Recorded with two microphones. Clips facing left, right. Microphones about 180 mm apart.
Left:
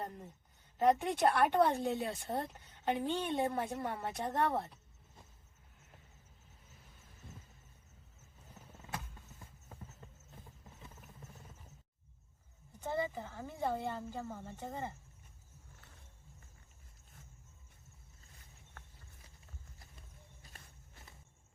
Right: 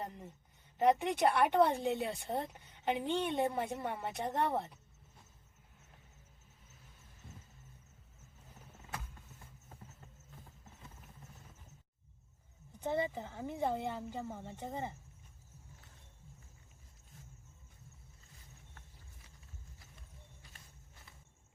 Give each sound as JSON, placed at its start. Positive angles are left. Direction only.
{"t": 0.8, "sound": "a woman's voice", "side_deg": -15}
{"t": 12.8, "sound": "speech", "side_deg": -20}